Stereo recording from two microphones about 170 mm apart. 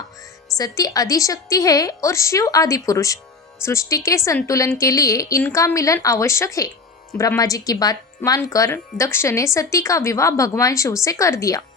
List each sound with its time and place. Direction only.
0.5 s speech: 20° left (ahead or behind)